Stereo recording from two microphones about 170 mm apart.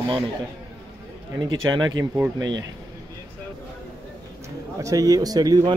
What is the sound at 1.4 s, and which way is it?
Speech, 25° right (ahead or behind).